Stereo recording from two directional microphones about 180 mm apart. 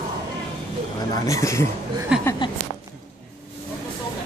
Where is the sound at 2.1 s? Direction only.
5° right (ahead or behind).